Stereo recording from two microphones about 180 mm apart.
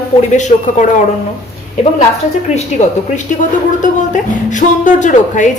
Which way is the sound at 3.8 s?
45° left (ahead or behind).